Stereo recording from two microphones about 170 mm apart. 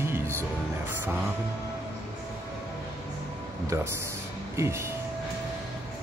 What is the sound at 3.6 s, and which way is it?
Speech, 15° right (ahead or behind).